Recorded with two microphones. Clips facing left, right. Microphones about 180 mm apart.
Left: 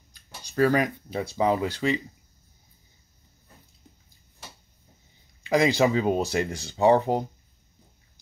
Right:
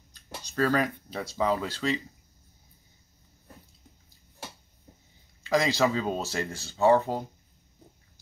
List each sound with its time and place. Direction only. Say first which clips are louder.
0.1 s a sound: left 3 dB; 10° left (ahead or behind)
1.3 s speech: left 3 dB; 15° left (ahead or behind)
5.4 s speech: left 3 dB; 15° left (ahead or behind)